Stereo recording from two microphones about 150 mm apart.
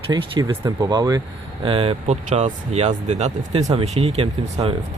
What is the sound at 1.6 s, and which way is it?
Speech, 40° right (ahead or behind).